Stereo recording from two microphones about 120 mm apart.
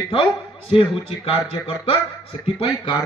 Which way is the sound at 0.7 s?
45° left (ahead or behind).